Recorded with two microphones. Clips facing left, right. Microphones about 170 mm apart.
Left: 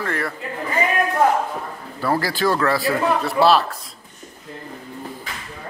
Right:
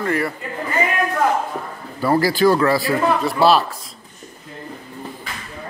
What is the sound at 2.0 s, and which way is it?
A man's voice, 5° right (ahead or behind).